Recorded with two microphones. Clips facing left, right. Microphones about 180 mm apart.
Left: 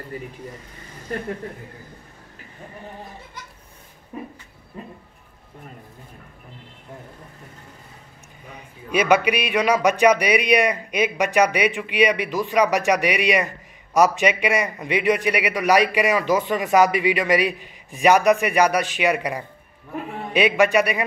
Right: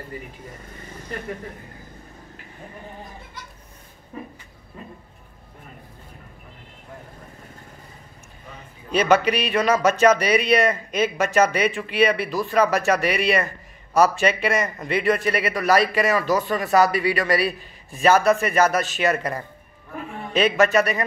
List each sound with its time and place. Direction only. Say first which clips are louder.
8.5 s a man's voice: even; 10° left (ahead or behind)